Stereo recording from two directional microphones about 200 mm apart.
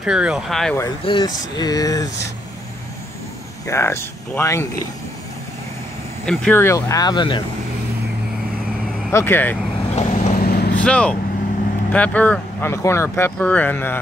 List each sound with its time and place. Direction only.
0.0 s speech: 5° right (ahead or behind)
0.7 s speech: 20° left (ahead or behind)
3.6 s speech: 15° left (ahead or behind)
6.2 s speech: 5° left (ahead or behind); by 7.4 s 25° left (ahead or behind)
9.1 s speech: 10° left (ahead or behind)
9.9 s vehicle: 40° left (ahead or behind)
10.7 s speech: 5° left (ahead or behind)